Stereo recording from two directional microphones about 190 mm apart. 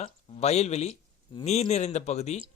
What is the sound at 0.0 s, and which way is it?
A man's voice, 35° left (ahead or behind).